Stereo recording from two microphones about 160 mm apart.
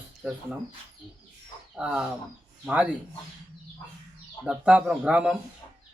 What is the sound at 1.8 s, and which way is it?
A man's voice, 5° right (ahead or behind).